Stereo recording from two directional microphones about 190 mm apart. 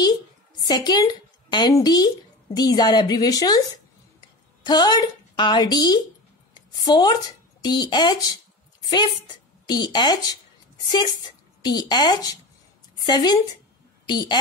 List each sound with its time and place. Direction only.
0.6 s a woman's voice: 20° left (ahead or behind)